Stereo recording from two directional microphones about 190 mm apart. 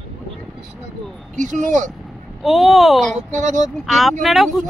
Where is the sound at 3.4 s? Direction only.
40° right (ahead or behind).